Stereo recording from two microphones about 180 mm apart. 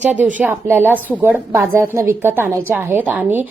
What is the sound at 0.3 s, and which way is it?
A woman's voice, 10° right (ahead or behind).